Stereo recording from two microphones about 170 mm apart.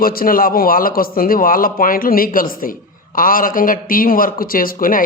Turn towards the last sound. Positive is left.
turn(degrees=55)  # may be behind; listen again after turning